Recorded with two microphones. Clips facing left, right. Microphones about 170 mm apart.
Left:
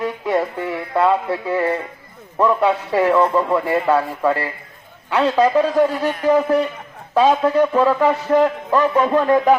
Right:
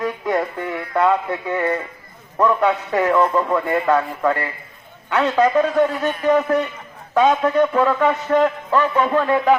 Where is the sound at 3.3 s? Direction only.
30° left (ahead or behind).